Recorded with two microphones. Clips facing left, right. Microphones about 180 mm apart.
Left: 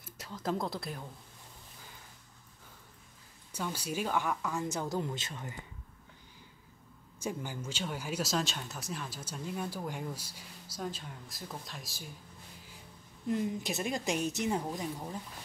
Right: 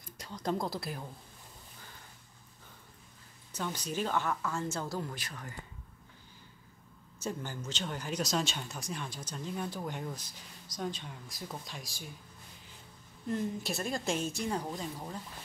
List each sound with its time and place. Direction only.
0.0 s speech: 5° left (ahead or behind)
3.5 s speech: 10° left (ahead or behind)
7.2 s speech: 10° left (ahead or behind)
13.3 s speech: 15° left (ahead or behind)